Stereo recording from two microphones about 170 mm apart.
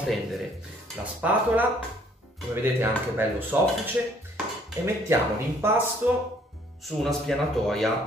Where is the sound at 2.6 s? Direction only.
10° right (ahead or behind).